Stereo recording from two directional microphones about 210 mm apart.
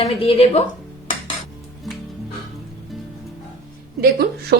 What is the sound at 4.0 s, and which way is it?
Speech, 50° right (ahead or behind).